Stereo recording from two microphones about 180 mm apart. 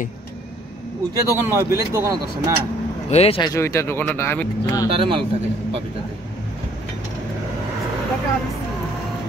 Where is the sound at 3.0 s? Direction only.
35° left (ahead or behind).